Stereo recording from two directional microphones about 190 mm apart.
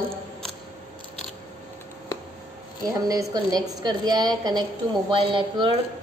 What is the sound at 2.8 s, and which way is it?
A woman's voice, 20° right (ahead or behind).